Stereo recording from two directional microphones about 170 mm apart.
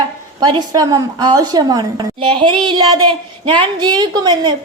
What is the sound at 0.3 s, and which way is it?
A woman's voice, 25° right (ahead or behind).